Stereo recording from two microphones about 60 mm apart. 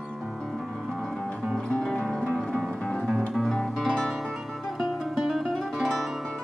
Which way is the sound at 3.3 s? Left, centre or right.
Centre.